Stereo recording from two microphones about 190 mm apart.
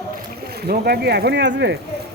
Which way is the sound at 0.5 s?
55° right (ahead or behind).